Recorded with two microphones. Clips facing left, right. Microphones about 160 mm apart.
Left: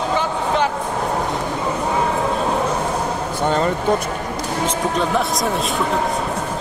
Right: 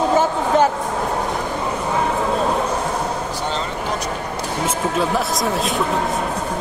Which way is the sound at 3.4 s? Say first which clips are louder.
Left 9 dB; 50° left (ahead or behind).